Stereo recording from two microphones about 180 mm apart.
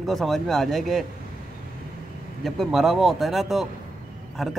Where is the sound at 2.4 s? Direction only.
Centre (ahead or behind).